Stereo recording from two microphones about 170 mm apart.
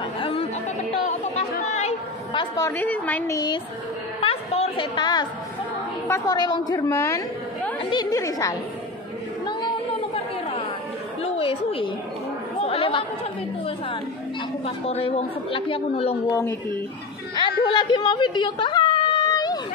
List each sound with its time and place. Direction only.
0.2 s chatter: 30° left (ahead or behind)
1.7 s chatter: 40° left (ahead or behind)
2.5 s a woman's voice: 15° left (ahead or behind)
3.3 s a woman's voice: 25° left (ahead or behind)
9.5 s chatter: 25° left (ahead or behind)
11.2 s a sound: 35° left (ahead or behind)
12.6 s chatter: 35° left (ahead or behind)
14.9 s a woman's voice: 35° left (ahead or behind)
16.3 s a woman's voice: 15° left (ahead or behind)
17.4 s a sound: 30° left (ahead or behind)